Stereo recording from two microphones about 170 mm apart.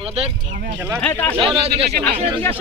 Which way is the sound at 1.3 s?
35° right (ahead or behind).